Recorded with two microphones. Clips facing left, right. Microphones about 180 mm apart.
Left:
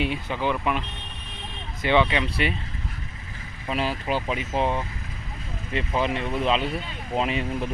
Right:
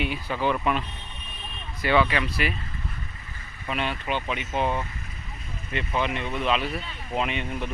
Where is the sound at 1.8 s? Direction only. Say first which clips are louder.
Left 1 dB; 20° left (ahead or behind).